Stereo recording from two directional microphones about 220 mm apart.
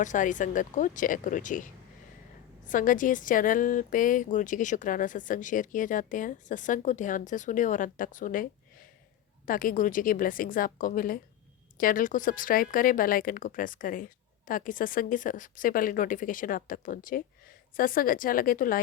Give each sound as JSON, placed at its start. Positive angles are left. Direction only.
{"t": 0.0, "sound": "a woman's voice", "side_deg": 35}
{"t": 9.5, "sound": "a woman's voice", "side_deg": 40}